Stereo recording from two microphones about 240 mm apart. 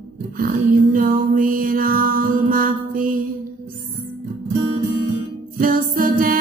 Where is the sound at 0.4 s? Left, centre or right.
Right.